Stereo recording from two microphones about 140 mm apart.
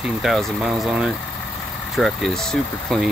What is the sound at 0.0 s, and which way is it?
Speech, centre (ahead or behind).